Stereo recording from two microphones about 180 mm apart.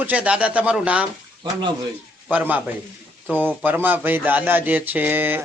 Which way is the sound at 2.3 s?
10° right (ahead or behind).